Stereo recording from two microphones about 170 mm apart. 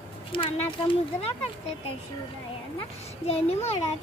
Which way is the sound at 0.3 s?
30° left (ahead or behind).